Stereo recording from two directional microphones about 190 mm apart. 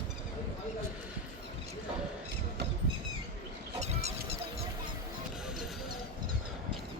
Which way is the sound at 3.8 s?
35° right (ahead or behind).